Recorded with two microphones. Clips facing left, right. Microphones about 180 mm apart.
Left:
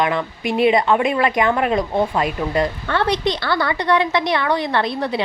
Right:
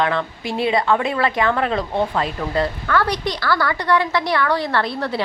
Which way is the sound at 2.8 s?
25° left (ahead or behind).